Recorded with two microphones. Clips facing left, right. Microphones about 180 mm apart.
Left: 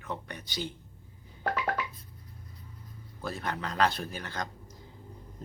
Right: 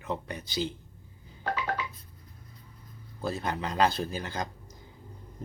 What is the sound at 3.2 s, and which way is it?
A man's voice, 25° right (ahead or behind).